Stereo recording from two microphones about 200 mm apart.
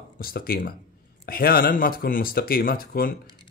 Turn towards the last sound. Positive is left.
turn(degrees=45)  # may be behind; listen again after turning